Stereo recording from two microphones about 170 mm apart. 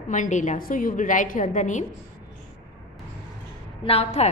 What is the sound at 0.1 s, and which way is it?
A woman's voice, 45° left (ahead or behind).